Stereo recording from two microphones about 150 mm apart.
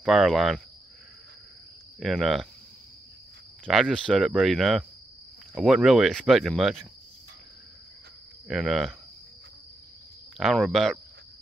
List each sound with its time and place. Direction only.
0.0 s speech: centre (ahead or behind)
2.0 s speech: centre (ahead or behind)
3.6 s speech: centre (ahead or behind)
8.5 s speech: centre (ahead or behind)
10.3 s speech: centre (ahead or behind)